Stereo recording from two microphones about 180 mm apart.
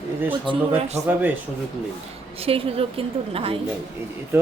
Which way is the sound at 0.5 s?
25° right (ahead or behind).